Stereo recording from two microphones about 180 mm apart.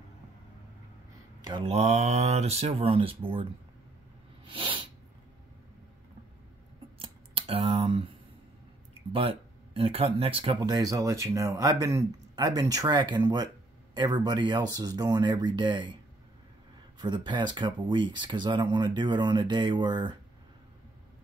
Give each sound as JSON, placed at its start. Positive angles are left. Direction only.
{"t": 1.4, "sound": "mantra", "side_deg": -25}
{"t": 1.7, "sound": "speech", "side_deg": -35}
{"t": 4.5, "sound": "sneeze", "side_deg": -30}
{"t": 7.0, "sound": "scissors", "side_deg": -30}
{"t": 9.8, "sound": "speech", "side_deg": -35}
{"t": 17.0, "sound": "speech", "side_deg": -25}